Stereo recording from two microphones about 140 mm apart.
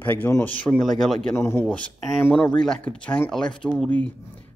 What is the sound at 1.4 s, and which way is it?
Speech, 20° left (ahead or behind).